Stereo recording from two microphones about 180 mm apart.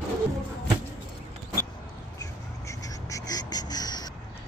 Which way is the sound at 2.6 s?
20° left (ahead or behind).